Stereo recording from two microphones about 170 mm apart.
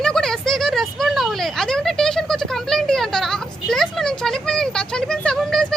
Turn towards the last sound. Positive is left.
turn(degrees=0)  # may be behind; listen again after turning